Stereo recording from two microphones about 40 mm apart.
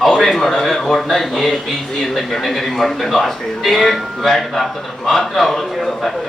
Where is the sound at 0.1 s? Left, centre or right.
Centre.